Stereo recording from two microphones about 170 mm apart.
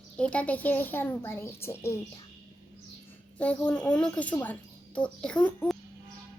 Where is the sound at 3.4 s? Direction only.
5° left (ahead or behind).